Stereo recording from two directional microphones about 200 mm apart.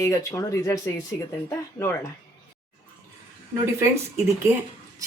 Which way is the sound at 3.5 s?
15° right (ahead or behind).